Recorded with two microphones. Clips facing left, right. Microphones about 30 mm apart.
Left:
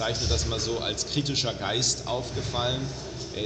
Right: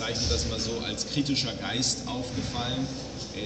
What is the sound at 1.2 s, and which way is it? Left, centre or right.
Speech, centre.